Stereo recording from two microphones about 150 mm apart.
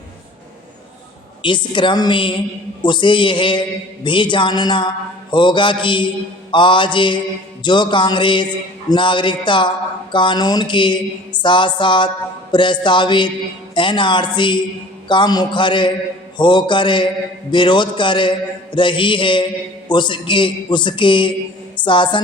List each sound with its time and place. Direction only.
1.4 s speech: 30° left (ahead or behind)